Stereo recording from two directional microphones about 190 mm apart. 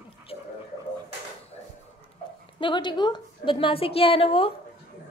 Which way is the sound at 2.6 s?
25° left (ahead or behind).